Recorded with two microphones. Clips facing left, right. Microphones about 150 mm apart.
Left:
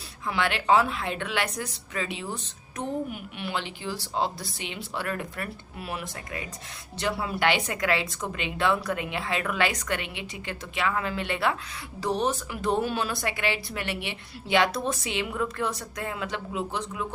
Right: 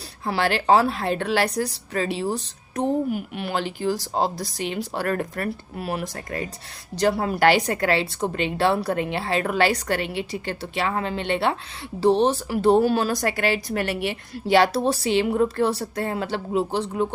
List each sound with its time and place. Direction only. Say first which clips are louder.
0.3 s a woman's voice: right 4 dB; 35° right (ahead or behind)